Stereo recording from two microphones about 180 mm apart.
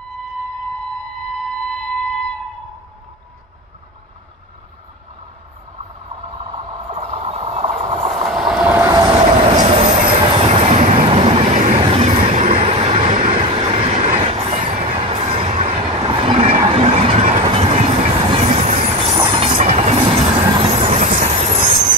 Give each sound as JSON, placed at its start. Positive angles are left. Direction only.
{"t": 1.3, "sound": "a sound", "side_deg": 5}
{"t": 6.9, "sound": "vehicle", "side_deg": -35}
{"t": 7.8, "sound": "train", "side_deg": -40}
{"t": 8.1, "sound": "train", "side_deg": 0}
{"t": 9.2, "sound": "train", "side_deg": -35}
{"t": 12.0, "sound": "vehicle", "side_deg": -40}
{"t": 14.2, "sound": "train", "side_deg": -35}
{"t": 15.5, "sound": "train", "side_deg": -45}
{"t": 16.1, "sound": "train", "side_deg": -30}
{"t": 16.6, "sound": "vehicle", "side_deg": -35}
{"t": 17.5, "sound": "train", "side_deg": -35}